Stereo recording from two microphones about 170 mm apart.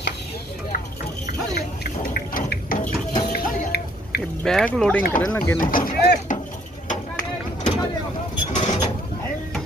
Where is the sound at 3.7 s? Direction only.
75° left (ahead or behind).